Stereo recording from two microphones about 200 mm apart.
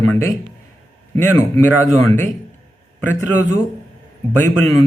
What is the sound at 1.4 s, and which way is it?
Speech, 15° left (ahead or behind).